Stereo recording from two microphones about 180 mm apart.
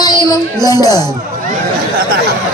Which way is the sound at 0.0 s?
20° left (ahead or behind).